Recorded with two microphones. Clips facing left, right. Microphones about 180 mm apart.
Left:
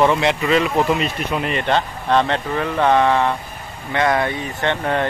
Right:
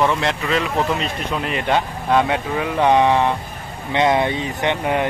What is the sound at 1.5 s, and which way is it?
Speech, 5° right (ahead or behind).